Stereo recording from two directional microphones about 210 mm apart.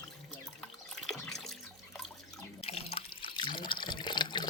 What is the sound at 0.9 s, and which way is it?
Water, centre (ahead or behind).